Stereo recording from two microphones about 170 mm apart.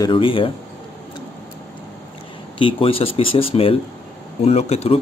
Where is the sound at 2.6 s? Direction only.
30° left (ahead or behind).